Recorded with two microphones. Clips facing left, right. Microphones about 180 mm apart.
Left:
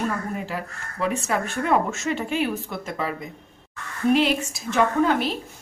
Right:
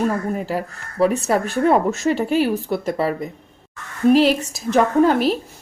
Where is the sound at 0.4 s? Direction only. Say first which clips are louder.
Right 6 dB; 40° right (ahead or behind).